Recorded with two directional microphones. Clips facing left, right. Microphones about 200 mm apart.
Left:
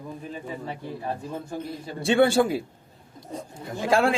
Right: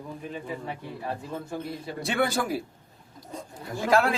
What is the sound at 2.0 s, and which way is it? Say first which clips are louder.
Speech: left 8 dB; 30° left (ahead or behind).